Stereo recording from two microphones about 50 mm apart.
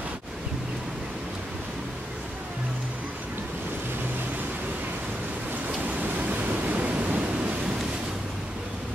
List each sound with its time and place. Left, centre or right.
5.9 s pink noise: right